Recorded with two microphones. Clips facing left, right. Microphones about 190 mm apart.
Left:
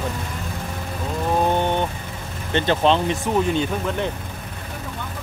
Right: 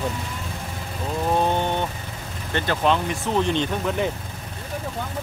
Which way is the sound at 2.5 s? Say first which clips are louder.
Left 3 dB; 25° left (ahead or behind).